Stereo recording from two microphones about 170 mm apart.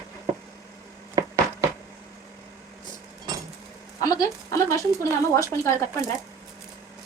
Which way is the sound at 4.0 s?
20° left (ahead or behind).